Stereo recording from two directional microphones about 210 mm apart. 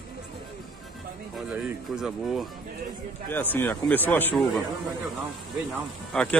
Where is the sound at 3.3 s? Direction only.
10° left (ahead or behind).